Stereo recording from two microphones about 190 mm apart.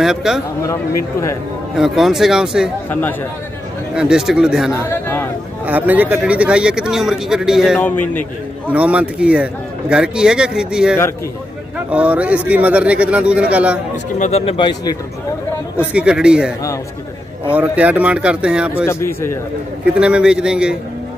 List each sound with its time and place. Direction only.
0.0 s a man's voice: centre (ahead or behind)
1.8 s a man's voice: centre (ahead or behind)
2.9 s a man's voice: 10° left (ahead or behind)
3.9 s a man's voice: 5° right (ahead or behind)
5.0 s a sound: 10° left (ahead or behind)
5.7 s a man's voice: 10° right (ahead or behind)
7.8 s a man's voice: 10° left (ahead or behind)
8.6 s a man's voice: 5° right (ahead or behind)
14.1 s speech: 35° left (ahead or behind)
15.8 s a man's voice: 5° right (ahead or behind)
18.9 s a man's voice: 15° left (ahead or behind)
19.9 s a man's voice: 5° right (ahead or behind)